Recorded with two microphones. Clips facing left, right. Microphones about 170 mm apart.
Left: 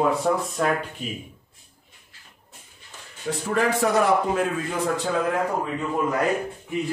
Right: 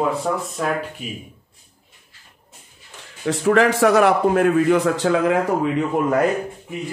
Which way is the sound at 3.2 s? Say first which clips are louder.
Right 7 dB; 90° right.